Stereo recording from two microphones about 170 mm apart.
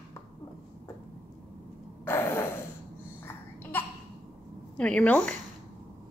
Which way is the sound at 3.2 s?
10° left (ahead or behind).